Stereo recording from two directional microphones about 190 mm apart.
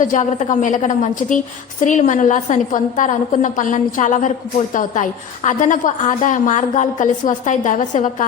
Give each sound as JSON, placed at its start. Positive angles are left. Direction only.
{"t": 0.0, "sound": "a woman's voice", "side_deg": 40}